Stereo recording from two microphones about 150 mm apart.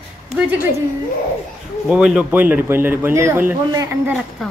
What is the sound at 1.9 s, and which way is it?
A man's voice, 5° right (ahead or behind).